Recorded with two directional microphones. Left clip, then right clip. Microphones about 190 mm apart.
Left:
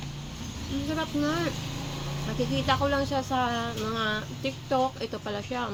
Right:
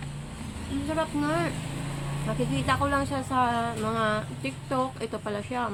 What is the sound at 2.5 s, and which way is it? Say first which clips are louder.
Speech: even; 20° right (ahead or behind).